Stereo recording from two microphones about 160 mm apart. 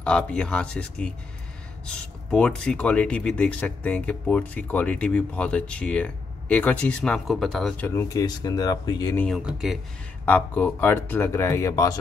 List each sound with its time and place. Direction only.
0.0 s speech: 5° left (ahead or behind)
7.8 s speech: 20° left (ahead or behind)
9.1 s speech: 10° left (ahead or behind)
9.4 s speech: 5° right (ahead or behind)
10.2 s speech: 10° left (ahead or behind)